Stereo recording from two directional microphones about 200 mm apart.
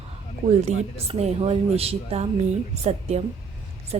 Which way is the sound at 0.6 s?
30° right (ahead or behind).